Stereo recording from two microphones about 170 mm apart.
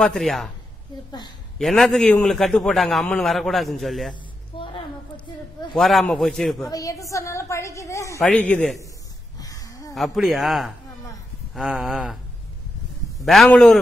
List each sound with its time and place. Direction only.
0.0 s a man's voice: centre (ahead or behind)
1.6 s a man's voice: centre (ahead or behind)
4.1 s a sound: 30° left (ahead or behind)
5.8 s a man's voice: centre (ahead or behind)
6.6 s a woman's voice: 20° left (ahead or behind)
8.2 s a woman's voice: 5° left (ahead or behind)
9.4 s a sound: 20° left (ahead or behind)
9.9 s a man's voice: centre (ahead or behind)
13.2 s a man's voice: centre (ahead or behind)